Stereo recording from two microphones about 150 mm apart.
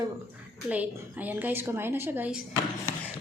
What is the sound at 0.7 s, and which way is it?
A woman's voice, 10° right (ahead or behind).